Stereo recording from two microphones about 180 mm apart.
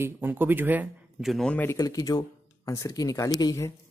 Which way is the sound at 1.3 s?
5° left (ahead or behind).